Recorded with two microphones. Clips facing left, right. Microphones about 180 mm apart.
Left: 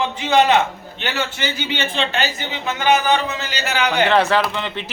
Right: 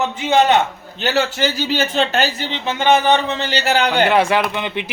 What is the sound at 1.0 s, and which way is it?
Speech, 40° right (ahead or behind).